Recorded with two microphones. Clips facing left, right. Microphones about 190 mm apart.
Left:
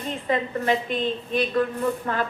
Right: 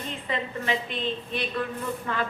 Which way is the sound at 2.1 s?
45° left (ahead or behind).